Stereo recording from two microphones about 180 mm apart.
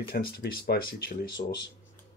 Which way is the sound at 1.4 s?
40° left (ahead or behind).